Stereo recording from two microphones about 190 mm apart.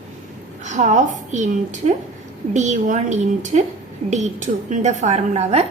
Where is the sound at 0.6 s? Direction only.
40° right (ahead or behind).